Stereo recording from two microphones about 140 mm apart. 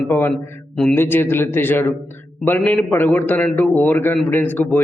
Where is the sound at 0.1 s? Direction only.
15° left (ahead or behind).